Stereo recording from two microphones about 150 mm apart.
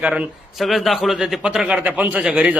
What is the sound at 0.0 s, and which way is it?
A man's voice, 5° right (ahead or behind).